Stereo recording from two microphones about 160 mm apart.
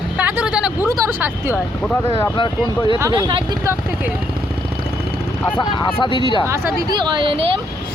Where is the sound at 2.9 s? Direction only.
20° right (ahead or behind).